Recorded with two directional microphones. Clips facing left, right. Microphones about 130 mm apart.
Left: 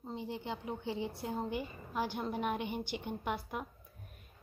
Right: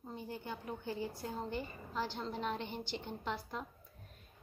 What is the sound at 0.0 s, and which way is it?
A woman's voice, 20° left (ahead or behind).